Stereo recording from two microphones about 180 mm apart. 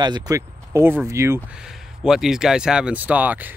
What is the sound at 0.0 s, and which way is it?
Speech, 20° right (ahead or behind).